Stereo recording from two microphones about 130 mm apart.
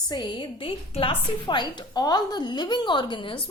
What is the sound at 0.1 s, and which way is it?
A woman's voice, 40° left (ahead or behind).